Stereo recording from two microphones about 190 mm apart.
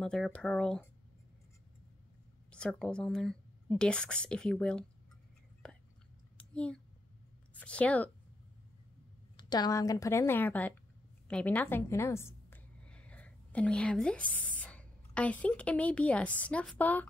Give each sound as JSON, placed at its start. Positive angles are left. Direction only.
{"t": 0.0, "sound": "speech", "side_deg": 5}
{"t": 2.5, "sound": "speech", "side_deg": 5}
{"t": 5.6, "sound": "whispering", "side_deg": 5}
{"t": 6.3, "sound": "a sound", "side_deg": 5}
{"t": 7.6, "sound": "a woman's voice", "side_deg": 5}
{"t": 9.4, "sound": "a woman's voice", "side_deg": 20}